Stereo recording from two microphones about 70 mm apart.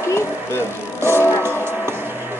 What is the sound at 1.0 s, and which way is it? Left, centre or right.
Music, left.